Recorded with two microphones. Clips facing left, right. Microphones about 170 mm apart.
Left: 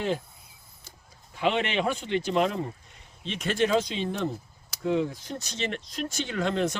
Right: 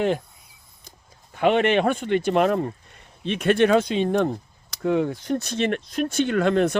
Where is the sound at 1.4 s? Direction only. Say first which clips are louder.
Right 7 dB; 55° right (ahead or behind).